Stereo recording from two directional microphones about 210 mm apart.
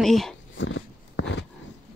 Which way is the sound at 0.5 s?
65° left (ahead or behind).